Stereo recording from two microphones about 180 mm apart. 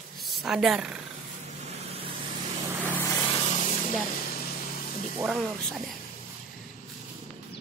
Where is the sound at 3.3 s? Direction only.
35° left (ahead or behind).